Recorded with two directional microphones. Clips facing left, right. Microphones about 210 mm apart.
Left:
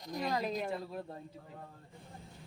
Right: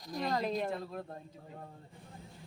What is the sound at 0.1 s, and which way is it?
Speech, centre (ahead or behind).